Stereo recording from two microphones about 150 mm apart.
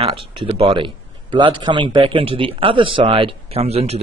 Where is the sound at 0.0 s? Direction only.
35° right (ahead or behind).